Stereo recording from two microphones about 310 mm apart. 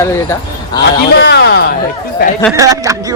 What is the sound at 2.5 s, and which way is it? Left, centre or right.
Speech, centre.